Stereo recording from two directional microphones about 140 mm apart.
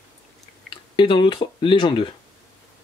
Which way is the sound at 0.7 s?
35° left (ahead or behind).